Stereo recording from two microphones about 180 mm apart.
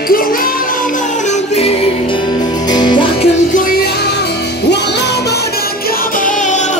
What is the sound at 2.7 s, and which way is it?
Music, 25° left (ahead or behind).